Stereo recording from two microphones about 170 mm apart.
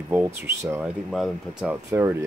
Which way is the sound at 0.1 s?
15° right (ahead or behind).